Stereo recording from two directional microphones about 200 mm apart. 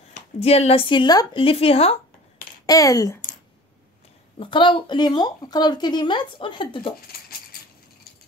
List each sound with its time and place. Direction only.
0.1 s speech: 30° left (ahead or behind)
2.6 s speech: 15° left (ahead or behind)
4.4 s speech: 25° left (ahead or behind)